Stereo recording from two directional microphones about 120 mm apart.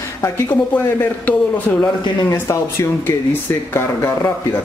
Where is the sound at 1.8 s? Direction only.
25° left (ahead or behind).